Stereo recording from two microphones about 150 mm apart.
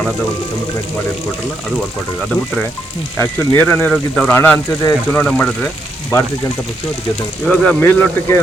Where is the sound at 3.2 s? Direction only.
10° left (ahead or behind).